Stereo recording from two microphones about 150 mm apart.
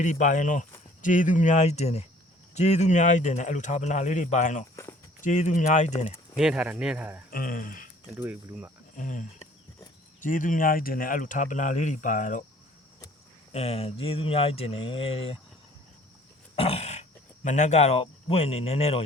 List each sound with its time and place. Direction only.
0.0 s a man's voice: 55° left (ahead or behind)
6.3 s speech: 5° right (ahead or behind)
7.3 s speech: 75° left (ahead or behind)
8.1 s speech: 10° right (ahead or behind)
9.0 s speech: 60° left (ahead or behind)
13.5 s speech: 45° left (ahead or behind)
16.6 s speech: 45° left (ahead or behind)